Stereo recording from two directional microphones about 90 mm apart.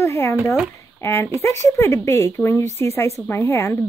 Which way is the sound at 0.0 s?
35° left (ahead or behind).